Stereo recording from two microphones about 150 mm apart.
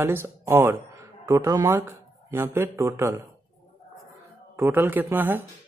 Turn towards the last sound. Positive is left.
turn(degrees=-15)  # may be behind; listen again after turning